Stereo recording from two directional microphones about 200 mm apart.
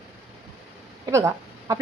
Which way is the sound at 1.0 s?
15° right (ahead or behind).